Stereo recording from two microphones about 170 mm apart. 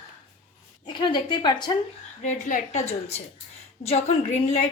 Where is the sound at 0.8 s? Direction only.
25° left (ahead or behind).